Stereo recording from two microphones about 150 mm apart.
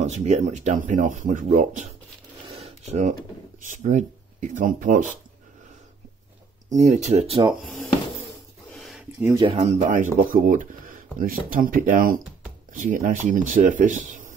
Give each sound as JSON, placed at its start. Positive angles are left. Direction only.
{"t": 0.0, "sound": "speech", "side_deg": -50}
{"t": 2.4, "sound": "a sound", "side_deg": -40}
{"t": 3.6, "sound": "speech", "side_deg": -55}
{"t": 6.7, "sound": "speech", "side_deg": -55}
{"t": 8.7, "sound": "a sound", "side_deg": 0}
{"t": 9.2, "sound": "speech", "side_deg": -20}
{"t": 9.5, "sound": "speech", "side_deg": -50}
{"t": 10.3, "sound": "speech", "side_deg": -65}